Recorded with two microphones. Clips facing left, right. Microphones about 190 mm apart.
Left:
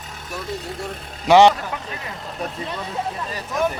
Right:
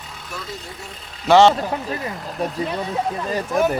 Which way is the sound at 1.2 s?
15° left (ahead or behind).